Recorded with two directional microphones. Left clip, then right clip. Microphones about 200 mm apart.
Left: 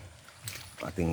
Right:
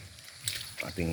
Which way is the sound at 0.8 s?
25° left (ahead or behind).